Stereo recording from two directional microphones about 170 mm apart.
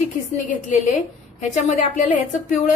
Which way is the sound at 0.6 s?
45° left (ahead or behind).